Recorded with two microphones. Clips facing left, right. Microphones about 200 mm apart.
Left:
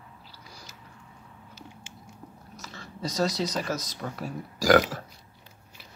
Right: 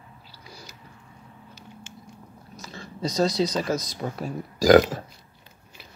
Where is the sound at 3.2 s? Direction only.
15° right (ahead or behind).